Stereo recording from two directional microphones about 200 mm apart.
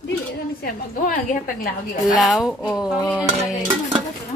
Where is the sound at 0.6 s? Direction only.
45° left (ahead or behind).